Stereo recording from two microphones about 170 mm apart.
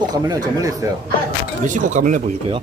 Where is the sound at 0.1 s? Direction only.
20° right (ahead or behind).